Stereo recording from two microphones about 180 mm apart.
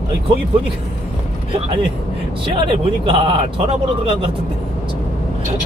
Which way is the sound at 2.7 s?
30° right (ahead or behind).